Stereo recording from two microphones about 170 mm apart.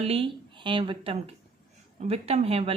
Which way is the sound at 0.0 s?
35° right (ahead or behind).